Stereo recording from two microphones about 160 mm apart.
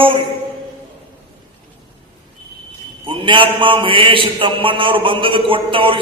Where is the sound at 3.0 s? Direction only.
30° right (ahead or behind).